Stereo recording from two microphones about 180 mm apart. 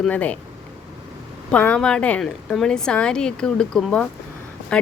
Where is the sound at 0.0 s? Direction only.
10° left (ahead or behind).